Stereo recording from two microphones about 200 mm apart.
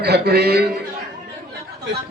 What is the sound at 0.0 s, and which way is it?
Speech, 55° right (ahead or behind).